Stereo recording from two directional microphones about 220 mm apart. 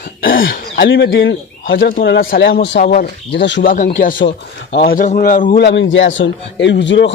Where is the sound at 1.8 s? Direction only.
40° left (ahead or behind).